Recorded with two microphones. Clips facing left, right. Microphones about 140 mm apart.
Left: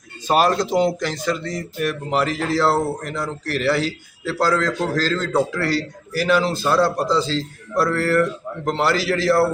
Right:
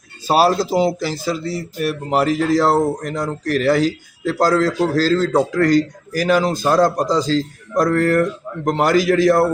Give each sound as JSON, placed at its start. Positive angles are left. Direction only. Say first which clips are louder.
{"t": 0.3, "sound": "a man's voice", "louder": "right 3 dB", "side_deg": -35}
{"t": 0.5, "sound": "a man's voice", "louder": "right 2 dB", "side_deg": -10}
{"t": 1.8, "sound": "a man's voice", "louder": "right 3 dB", "side_deg": -40}